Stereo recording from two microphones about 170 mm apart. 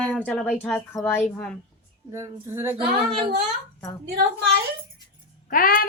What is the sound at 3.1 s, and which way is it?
Speech, 35° right (ahead or behind).